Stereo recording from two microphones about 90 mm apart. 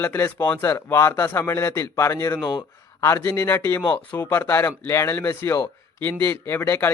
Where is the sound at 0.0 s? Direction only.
25° left (ahead or behind).